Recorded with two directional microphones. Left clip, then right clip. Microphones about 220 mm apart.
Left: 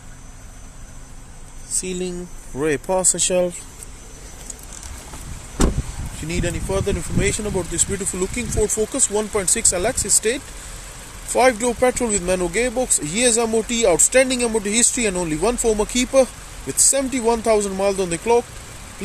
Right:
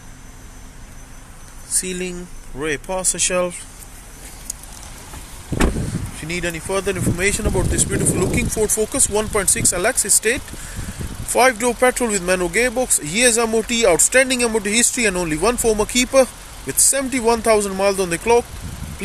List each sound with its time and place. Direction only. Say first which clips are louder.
1.8 s speech: even; 10° left (ahead or behind)
2.6 s speech: left 3 dB; 25° left (ahead or behind)
6.2 s speech: right 1 dB; 10° left (ahead or behind)